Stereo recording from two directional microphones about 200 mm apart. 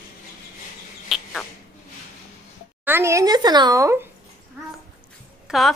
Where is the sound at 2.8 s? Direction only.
10° right (ahead or behind).